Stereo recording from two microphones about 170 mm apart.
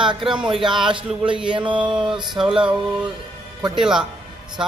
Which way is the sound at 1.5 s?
30° right (ahead or behind).